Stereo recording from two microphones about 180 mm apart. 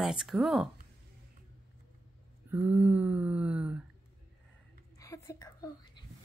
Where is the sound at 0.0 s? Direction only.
5° right (ahead or behind).